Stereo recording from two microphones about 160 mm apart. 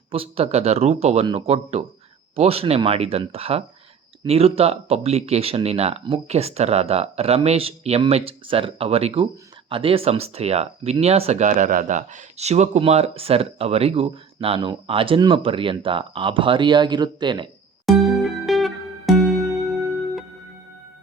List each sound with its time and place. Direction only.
0.1 s speech: 35° right (ahead or behind)
17.8 s music: centre (ahead or behind)